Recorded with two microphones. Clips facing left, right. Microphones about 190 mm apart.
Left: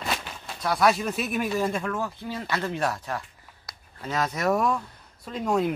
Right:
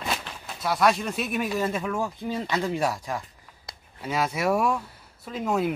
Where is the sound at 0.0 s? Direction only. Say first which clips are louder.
Even; centre (ahead or behind).